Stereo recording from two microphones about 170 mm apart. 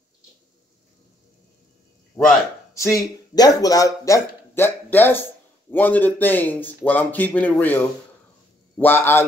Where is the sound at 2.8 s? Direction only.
20° left (ahead or behind).